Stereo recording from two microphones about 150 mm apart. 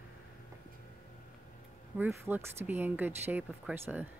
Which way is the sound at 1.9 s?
15° right (ahead or behind).